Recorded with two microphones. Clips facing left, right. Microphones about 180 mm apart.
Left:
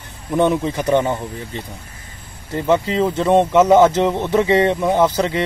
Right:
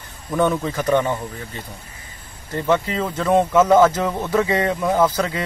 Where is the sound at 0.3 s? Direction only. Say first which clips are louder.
Left 3 dB; 20° left (ahead or behind).